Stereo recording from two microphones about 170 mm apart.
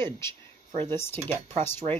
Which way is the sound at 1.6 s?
15° left (ahead or behind).